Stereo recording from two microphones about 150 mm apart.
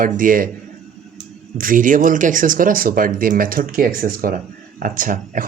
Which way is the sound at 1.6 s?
65° right (ahead or behind).